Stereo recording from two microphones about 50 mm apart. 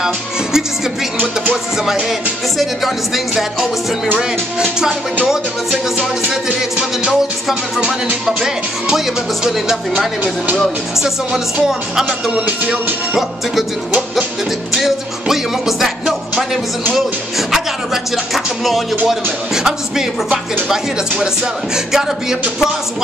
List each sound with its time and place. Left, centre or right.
0.0 s music: centre
1.1 s music: right
4.2 s speech: centre
8.9 s speech: centre
12.1 s music: right
14.8 s music: centre
16.9 s speech: centre
18.1 s music: centre
19.5 s speech: centre